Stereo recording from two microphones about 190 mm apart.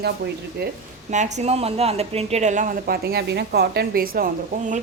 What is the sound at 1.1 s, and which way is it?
A woman's voice, 40° right (ahead or behind).